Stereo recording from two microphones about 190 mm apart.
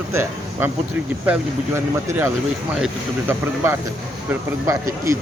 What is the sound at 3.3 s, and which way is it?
A man's voice, 15° right (ahead or behind).